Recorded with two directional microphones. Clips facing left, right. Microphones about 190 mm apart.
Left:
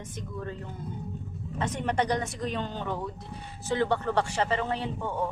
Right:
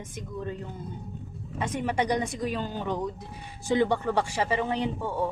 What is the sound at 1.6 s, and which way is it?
Speech, 10° right (ahead or behind).